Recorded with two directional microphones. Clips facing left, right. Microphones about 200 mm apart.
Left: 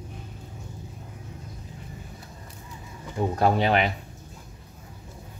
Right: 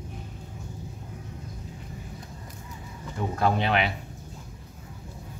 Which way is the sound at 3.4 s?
40° left (ahead or behind).